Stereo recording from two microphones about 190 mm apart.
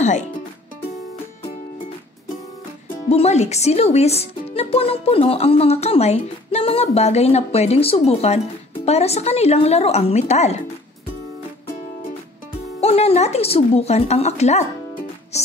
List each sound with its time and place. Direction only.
3.1 s speech: 35° left (ahead or behind)
12.8 s speech: 30° left (ahead or behind)